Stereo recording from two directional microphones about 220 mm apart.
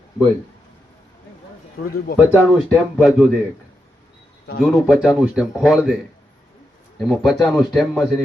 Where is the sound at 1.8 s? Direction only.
40° left (ahead or behind).